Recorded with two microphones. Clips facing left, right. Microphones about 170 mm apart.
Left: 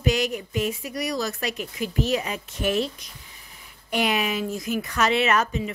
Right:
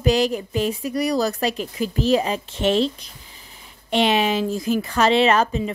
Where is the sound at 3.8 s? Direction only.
25° right (ahead or behind).